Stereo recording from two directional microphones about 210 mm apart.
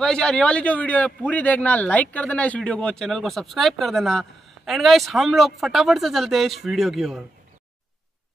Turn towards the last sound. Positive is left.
turn(degrees=0)  # may be behind; listen again after turning